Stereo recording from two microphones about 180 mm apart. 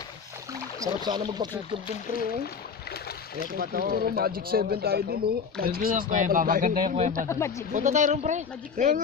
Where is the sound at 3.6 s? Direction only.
55° right (ahead or behind).